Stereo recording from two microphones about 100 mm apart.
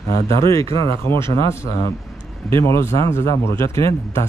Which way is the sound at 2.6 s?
30° left (ahead or behind).